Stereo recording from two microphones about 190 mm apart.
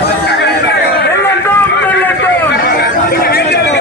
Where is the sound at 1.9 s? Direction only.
10° left (ahead or behind).